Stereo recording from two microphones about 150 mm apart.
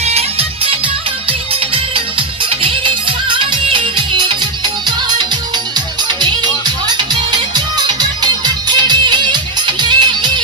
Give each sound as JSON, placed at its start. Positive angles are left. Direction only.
{"t": 0.0, "sound": "music", "side_deg": -40}
{"t": 2.6, "sound": "music", "side_deg": -35}
{"t": 6.2, "sound": "music", "side_deg": -30}